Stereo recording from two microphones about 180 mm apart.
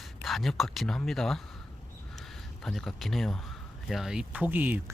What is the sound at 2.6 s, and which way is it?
Speech, 5° left (ahead or behind).